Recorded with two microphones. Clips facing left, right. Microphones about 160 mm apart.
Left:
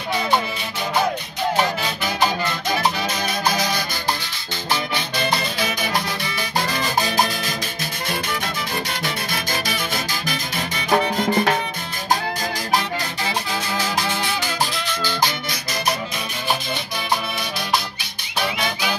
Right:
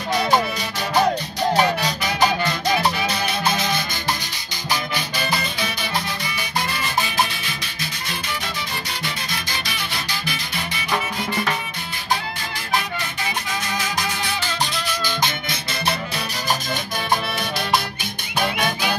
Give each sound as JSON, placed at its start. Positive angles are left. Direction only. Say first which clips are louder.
{"t": 10.9, "sound": "music", "louder": "left 7 dB", "side_deg": 50}